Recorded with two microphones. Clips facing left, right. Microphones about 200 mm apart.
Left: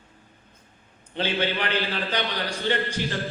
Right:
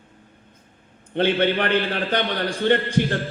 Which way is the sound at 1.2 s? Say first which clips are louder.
Right 7 dB; 55° right (ahead or behind).